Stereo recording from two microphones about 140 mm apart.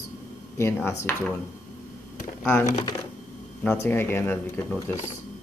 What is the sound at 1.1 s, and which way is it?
Speech, 15° left (ahead or behind).